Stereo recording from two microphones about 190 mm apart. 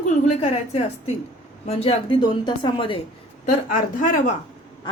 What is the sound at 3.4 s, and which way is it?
Speech, 45° left (ahead or behind).